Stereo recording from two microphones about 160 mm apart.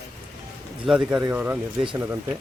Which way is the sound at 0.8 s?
5° right (ahead or behind).